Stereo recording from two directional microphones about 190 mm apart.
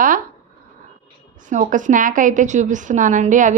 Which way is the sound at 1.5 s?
45° right (ahead or behind).